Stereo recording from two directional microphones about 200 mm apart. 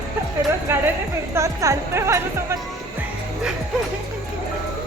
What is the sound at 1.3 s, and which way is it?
Speech, 15° right (ahead or behind).